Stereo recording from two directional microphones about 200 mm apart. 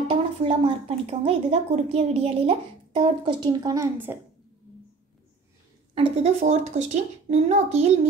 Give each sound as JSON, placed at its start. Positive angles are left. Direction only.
{"t": 0.1, "sound": "speech", "side_deg": -25}
{"t": 5.9, "sound": "a child's voice", "side_deg": -30}